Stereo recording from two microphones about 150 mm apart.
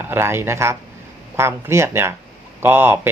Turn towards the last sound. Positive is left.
turn(degrees=-15)  # may be behind; listen again after turning